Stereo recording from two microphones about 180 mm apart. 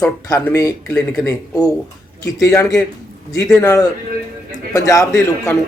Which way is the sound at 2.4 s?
20° left (ahead or behind).